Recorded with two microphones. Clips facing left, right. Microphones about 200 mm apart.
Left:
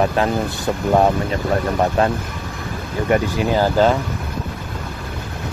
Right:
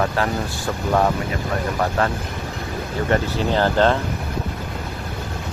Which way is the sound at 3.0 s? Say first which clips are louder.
Left 3 dB; 10° left (ahead or behind).